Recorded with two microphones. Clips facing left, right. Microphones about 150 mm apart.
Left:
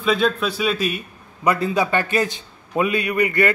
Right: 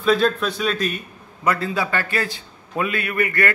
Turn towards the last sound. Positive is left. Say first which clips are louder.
# left 3 dB
turn(degrees=20)  # may be behind; listen again after turning